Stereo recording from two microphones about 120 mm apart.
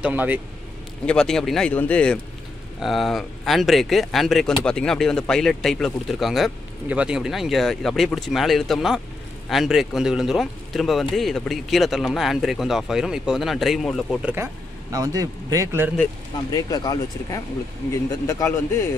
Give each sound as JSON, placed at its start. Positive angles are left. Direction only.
{"t": 0.0, "sound": "speech", "side_deg": -15}
{"t": 1.0, "sound": "speech", "side_deg": 5}
{"t": 2.8, "sound": "speech", "side_deg": 0}
{"t": 14.2, "sound": "speech", "side_deg": -20}
{"t": 16.5, "sound": "speech", "side_deg": 30}